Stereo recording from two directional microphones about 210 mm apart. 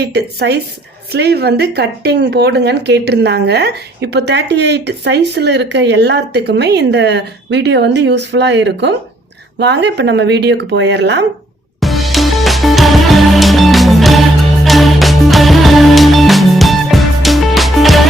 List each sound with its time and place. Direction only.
0.0 s speech: 50° right (ahead or behind)
11.8 s music: centre (ahead or behind)